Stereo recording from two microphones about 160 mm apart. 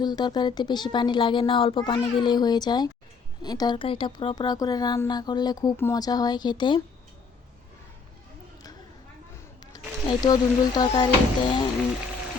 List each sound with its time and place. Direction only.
0.0 s a woman's voice: 25° left (ahead or behind)
9.7 s a woman's voice: 25° left (ahead or behind)